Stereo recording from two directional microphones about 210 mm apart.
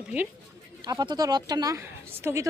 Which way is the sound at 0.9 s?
20° right (ahead or behind).